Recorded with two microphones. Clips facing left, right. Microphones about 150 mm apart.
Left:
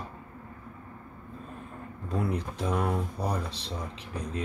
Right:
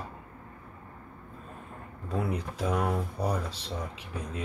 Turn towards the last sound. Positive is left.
turn(degrees=-5)  # may be behind; listen again after turning